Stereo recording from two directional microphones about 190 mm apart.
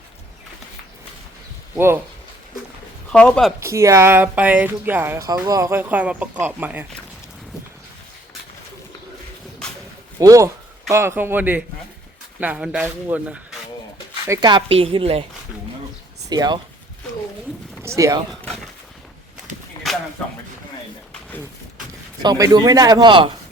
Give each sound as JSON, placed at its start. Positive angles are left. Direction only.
{"t": 1.7, "sound": "speech", "side_deg": -10}
{"t": 3.1, "sound": "speech", "side_deg": 5}
{"t": 3.6, "sound": "speech", "side_deg": -15}
{"t": 10.2, "sound": "a man's voice", "side_deg": -15}
{"t": 14.3, "sound": "a man's voice", "side_deg": -25}
{"t": 16.3, "sound": "a man's voice", "side_deg": -20}
{"t": 17.8, "sound": "speech", "side_deg": -15}
{"t": 18.3, "sound": "a sound", "side_deg": 0}
{"t": 21.1, "sound": "a sound", "side_deg": 10}
{"t": 22.2, "sound": "a man's voice", "side_deg": -20}